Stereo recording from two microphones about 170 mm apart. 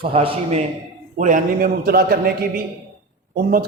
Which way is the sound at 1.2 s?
55° right (ahead or behind).